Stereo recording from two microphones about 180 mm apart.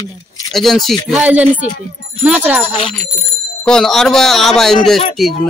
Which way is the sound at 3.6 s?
5° left (ahead or behind).